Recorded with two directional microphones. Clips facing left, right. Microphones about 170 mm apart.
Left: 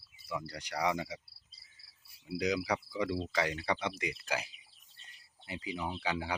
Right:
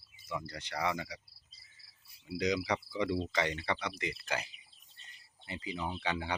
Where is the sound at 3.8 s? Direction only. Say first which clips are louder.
Left 2 dB; 20° left (ahead or behind).